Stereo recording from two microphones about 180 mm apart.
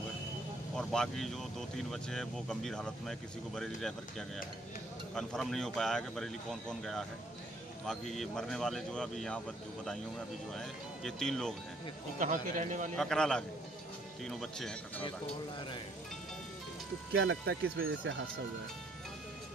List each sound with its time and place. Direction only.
0.7 s speech: 5° left (ahead or behind)
5.1 s speech: centre (ahead or behind)
10.5 s speech: centre (ahead or behind)
12.2 s a man's voice: 45° right (ahead or behind)
12.9 s speech: 5° left (ahead or behind)
17.1 s speech: 90° right